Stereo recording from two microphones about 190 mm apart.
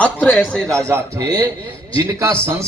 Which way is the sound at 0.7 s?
15° right (ahead or behind).